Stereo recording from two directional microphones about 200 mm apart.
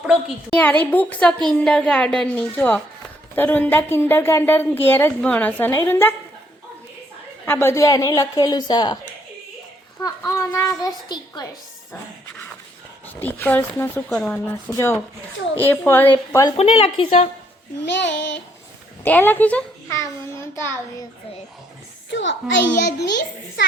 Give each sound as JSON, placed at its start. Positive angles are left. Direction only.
{"t": 0.1, "sound": "a woman's voice", "side_deg": 5}
{"t": 7.4, "sound": "a woman's voice", "side_deg": 10}
{"t": 10.0, "sound": "a woman's voice", "side_deg": 15}
{"t": 13.1, "sound": "a woman's voice", "side_deg": 10}
{"t": 16.6, "sound": "a woman's voice", "side_deg": 30}
{"t": 18.0, "sound": "a child's voice", "side_deg": 65}
{"t": 19.0, "sound": "a woman's voice", "side_deg": 10}
{"t": 22.1, "sound": "a child's voice", "side_deg": 65}